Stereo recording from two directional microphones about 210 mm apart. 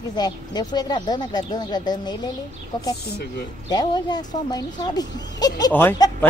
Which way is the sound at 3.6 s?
20° left (ahead or behind).